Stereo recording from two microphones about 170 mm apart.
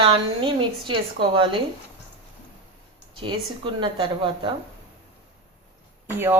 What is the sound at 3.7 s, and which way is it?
Speech, 30° right (ahead or behind).